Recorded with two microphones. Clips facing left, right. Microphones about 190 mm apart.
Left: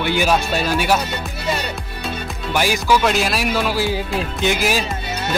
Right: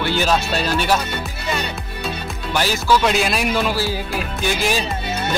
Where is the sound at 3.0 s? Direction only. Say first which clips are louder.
Even; centre (ahead or behind).